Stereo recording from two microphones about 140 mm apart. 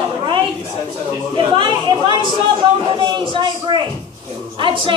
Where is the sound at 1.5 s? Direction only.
35° right (ahead or behind).